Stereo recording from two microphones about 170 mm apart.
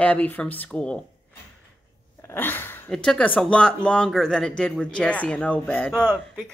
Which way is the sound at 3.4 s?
5° left (ahead or behind).